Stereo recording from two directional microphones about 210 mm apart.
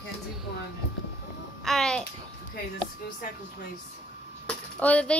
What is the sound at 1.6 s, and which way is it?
Speech, centre (ahead or behind).